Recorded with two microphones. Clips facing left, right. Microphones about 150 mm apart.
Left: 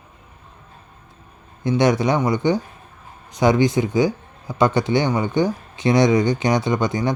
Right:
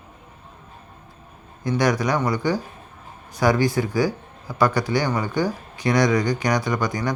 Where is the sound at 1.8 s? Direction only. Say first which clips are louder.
Left 3 dB; 25° left (ahead or behind).